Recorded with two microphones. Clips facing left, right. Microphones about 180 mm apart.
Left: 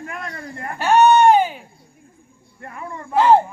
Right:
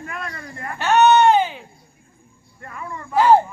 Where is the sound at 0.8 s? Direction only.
10° left (ahead or behind).